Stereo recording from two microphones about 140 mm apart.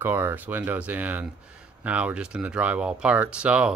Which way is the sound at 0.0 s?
15° right (ahead or behind).